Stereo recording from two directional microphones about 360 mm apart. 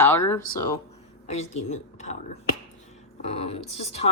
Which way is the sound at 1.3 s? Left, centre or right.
Centre.